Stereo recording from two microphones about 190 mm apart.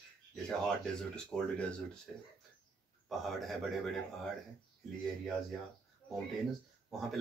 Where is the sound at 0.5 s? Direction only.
5° left (ahead or behind).